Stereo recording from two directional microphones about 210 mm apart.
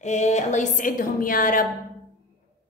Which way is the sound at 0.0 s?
35° left (ahead or behind).